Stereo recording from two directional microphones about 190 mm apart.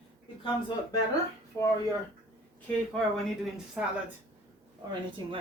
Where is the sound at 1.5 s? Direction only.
15° left (ahead or behind).